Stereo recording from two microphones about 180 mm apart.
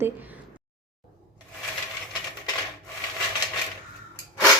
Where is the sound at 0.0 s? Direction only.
10° right (ahead or behind).